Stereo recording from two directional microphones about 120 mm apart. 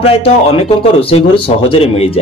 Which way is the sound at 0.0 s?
50° left (ahead or behind).